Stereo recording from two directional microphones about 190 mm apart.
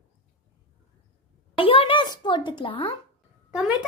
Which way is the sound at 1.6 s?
30° left (ahead or behind).